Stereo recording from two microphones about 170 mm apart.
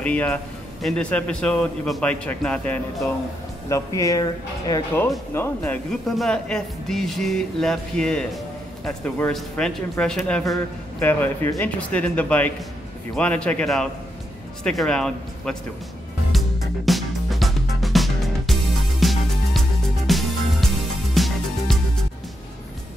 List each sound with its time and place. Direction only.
0.0 s a man's voice: 10° left (ahead or behind)
3.6 s a man's voice: 20° left (ahead or behind)
6.0 s speech: centre (ahead or behind)
10.4 s a man's voice: 15° left (ahead or behind)
16.3 s music: centre (ahead or behind)